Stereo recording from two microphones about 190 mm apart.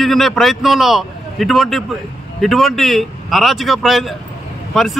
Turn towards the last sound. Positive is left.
turn(degrees=0)  # may be behind; listen again after turning